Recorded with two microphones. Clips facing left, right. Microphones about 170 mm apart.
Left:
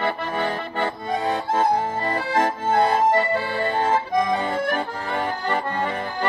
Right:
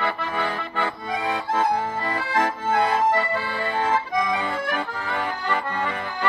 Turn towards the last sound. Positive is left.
turn(degrees=40)  # may be behind; listen again after turning